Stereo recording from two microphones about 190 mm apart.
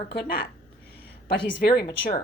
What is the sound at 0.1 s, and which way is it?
Speech, 60° left (ahead or behind).